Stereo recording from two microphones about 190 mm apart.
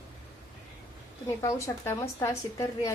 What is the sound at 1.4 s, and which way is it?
A woman's voice, 15° left (ahead or behind).